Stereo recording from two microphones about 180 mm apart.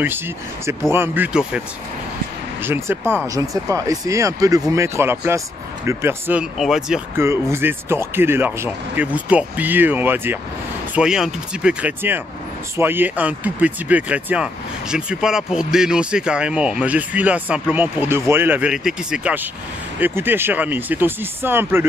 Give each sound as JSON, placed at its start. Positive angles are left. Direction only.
{"t": 0.9, "sound": "speech", "side_deg": -10}
{"t": 2.6, "sound": "speech", "side_deg": -10}
{"t": 6.6, "sound": "speech", "side_deg": 0}
{"t": 7.2, "sound": "speech", "side_deg": -15}